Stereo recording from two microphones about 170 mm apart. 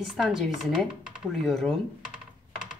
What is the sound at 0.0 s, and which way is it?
Speech, centre (ahead or behind).